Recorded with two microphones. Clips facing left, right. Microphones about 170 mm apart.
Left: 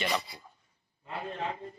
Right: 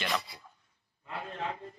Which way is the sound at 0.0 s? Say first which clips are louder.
Left 2 dB; centre (ahead or behind).